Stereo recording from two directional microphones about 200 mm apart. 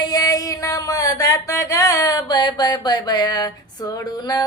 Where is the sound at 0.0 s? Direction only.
20° left (ahead or behind).